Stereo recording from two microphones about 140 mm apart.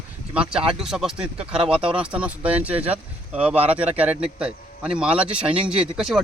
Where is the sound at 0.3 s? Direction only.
5° right (ahead or behind).